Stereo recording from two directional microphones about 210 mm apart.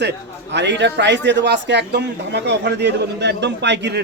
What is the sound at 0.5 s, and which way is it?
A man's voice, 55° right (ahead or behind).